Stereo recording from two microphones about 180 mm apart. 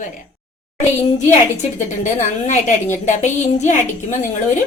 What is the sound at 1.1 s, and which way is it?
Speech, 40° left (ahead or behind).